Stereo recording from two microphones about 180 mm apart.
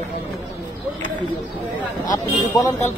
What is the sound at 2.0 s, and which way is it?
Speech, 20° left (ahead or behind).